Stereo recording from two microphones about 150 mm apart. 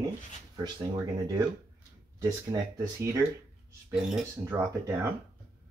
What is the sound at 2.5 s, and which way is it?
Speech, 20° right (ahead or behind).